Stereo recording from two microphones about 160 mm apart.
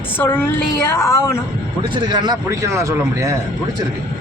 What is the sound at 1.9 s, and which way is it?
A man's voice, 25° right (ahead or behind).